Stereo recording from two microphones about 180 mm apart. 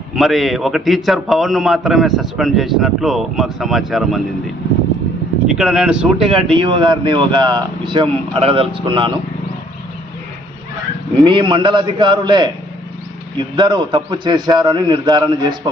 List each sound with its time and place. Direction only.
0.2 s a man's voice: centre (ahead or behind)
5.5 s a man's voice: 5° right (ahead or behind)
6.5 s speech: 30° right (ahead or behind)
11.2 s speech: 30° right (ahead or behind)